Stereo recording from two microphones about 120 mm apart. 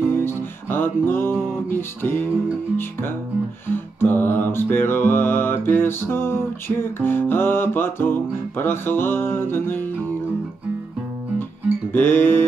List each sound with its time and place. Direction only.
0.0 s music: 20° left (ahead or behind)
11.9 s music: 15° left (ahead or behind)